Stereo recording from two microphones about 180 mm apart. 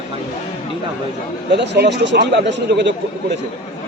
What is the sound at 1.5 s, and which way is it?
A man's voice, 70° right (ahead or behind).